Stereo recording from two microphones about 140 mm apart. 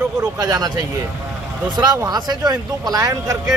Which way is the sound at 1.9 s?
30° right (ahead or behind).